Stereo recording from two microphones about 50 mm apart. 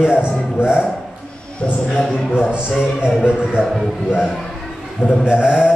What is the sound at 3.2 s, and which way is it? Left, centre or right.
Speech, centre.